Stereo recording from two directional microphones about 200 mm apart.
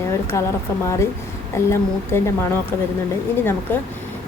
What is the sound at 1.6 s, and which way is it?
Speech, 15° left (ahead or behind).